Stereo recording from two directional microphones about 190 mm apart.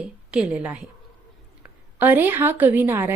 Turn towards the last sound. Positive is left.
turn(degrees=-10)  # may be behind; listen again after turning